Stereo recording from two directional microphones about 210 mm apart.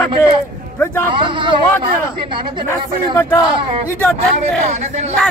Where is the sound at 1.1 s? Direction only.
25° right (ahead or behind).